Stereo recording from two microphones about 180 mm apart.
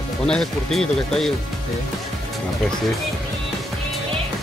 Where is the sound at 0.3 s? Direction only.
Centre (ahead or behind).